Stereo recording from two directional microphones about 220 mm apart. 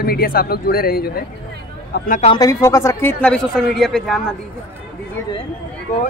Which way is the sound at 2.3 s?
15° left (ahead or behind).